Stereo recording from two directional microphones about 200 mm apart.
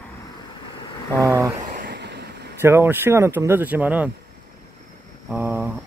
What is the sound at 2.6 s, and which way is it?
Speech, 10° right (ahead or behind).